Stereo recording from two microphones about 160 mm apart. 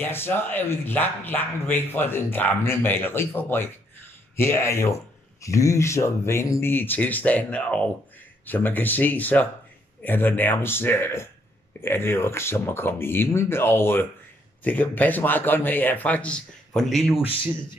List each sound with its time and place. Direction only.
0.0 s speech: 15° left (ahead or behind)